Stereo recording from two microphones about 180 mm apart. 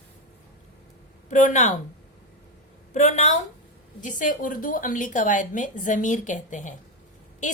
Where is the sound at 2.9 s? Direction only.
40° left (ahead or behind).